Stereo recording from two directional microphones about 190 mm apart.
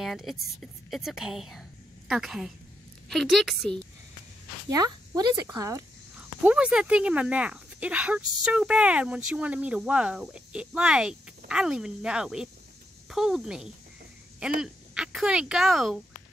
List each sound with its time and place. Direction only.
0.0 s a woman's voice: centre (ahead or behind)
4.6 s speech: 20° right (ahead or behind)
6.4 s speech: 5° right (ahead or behind)